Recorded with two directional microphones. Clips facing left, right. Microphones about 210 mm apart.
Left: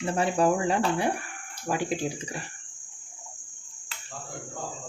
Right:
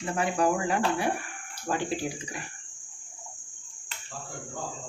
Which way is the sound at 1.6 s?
10° left (ahead or behind).